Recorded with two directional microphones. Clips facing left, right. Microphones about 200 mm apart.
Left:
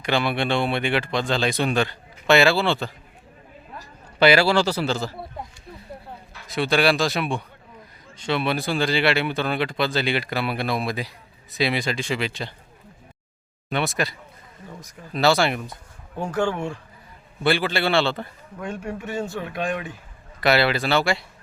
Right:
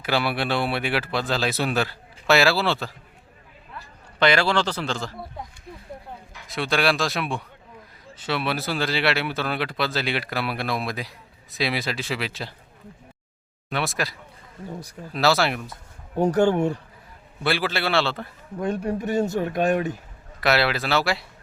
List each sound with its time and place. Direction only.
0.0 s speech: 5° right (ahead or behind)
4.2 s speech: 5° left (ahead or behind)
6.5 s speech: centre (ahead or behind)
13.7 s speech: centre (ahead or behind)
16.1 s speech: 40° right (ahead or behind)
17.4 s speech: centre (ahead or behind)
18.6 s speech: 35° right (ahead or behind)
20.4 s speech: centre (ahead or behind)